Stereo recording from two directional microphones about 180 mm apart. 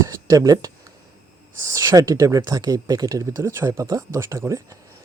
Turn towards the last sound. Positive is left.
turn(degrees=-20)  # may be behind; listen again after turning